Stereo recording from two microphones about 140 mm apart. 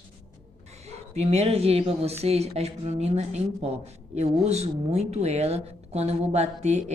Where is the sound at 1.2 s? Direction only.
50° right (ahead or behind).